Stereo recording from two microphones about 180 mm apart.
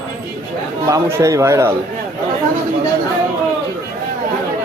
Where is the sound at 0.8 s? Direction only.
15° right (ahead or behind).